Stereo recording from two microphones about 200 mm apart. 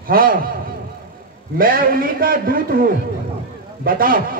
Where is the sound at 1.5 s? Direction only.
45° right (ahead or behind).